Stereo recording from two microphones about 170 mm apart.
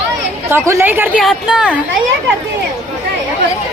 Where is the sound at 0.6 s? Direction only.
15° right (ahead or behind).